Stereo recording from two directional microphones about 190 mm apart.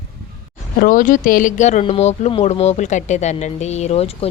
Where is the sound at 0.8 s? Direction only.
45° left (ahead or behind).